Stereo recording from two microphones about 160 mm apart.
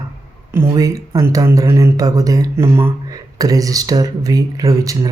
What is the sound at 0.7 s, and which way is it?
Speech, 20° right (ahead or behind).